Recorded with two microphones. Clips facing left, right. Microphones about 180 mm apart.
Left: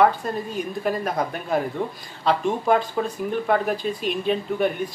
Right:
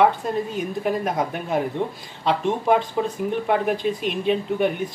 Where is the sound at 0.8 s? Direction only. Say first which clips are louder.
Right 1 dB; 20° right (ahead or behind).